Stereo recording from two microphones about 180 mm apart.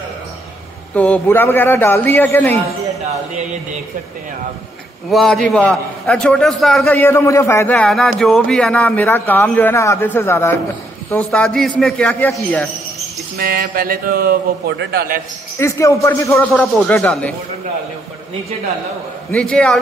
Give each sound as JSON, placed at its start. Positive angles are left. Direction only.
{"t": 0.9, "sound": "speech", "side_deg": 10}
{"t": 5.1, "sound": "a man's voice", "side_deg": 5}
{"t": 7.0, "sound": "a man's voice", "side_deg": 15}
{"t": 13.4, "sound": "a man's voice", "side_deg": -60}
{"t": 15.6, "sound": "speech", "side_deg": 15}
{"t": 19.3, "sound": "a man's voice", "side_deg": 5}